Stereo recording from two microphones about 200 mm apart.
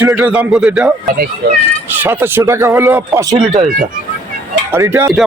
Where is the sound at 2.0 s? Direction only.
10° right (ahead or behind).